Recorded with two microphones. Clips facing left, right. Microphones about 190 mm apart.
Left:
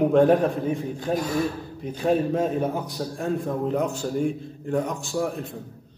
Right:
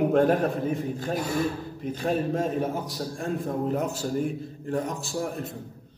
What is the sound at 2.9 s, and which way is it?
A man's voice, centre (ahead or behind).